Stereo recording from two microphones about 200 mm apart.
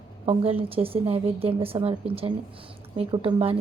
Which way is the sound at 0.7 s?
30° right (ahead or behind).